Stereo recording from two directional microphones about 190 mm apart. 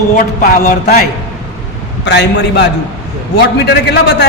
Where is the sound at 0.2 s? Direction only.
45° left (ahead or behind).